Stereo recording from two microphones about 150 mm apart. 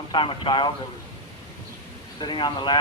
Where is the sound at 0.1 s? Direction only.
35° left (ahead or behind).